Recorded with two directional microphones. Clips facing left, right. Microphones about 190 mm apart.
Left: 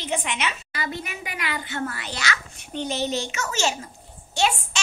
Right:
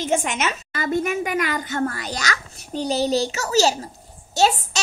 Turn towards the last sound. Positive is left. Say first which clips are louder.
# right 5 dB
turn(degrees=-40)  # may be behind; listen again after turning